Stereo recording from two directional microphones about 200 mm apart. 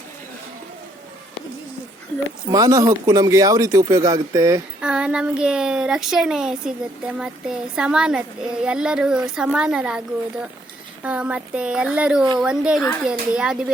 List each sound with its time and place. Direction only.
2.5 s speech: 15° right (ahead or behind)
4.8 s speech: 5° right (ahead or behind)
11.0 s a child's voice: 5° right (ahead or behind)
13.1 s speech: 5° right (ahead or behind)